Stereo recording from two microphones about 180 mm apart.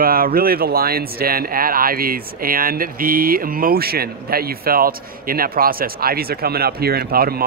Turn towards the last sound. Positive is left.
turn(degrees=-60)  # may be behind; listen again after turning